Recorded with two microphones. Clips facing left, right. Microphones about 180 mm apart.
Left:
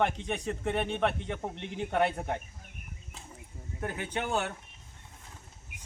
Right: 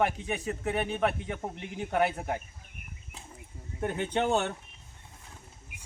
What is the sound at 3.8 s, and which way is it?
Speech, 25° right (ahead or behind).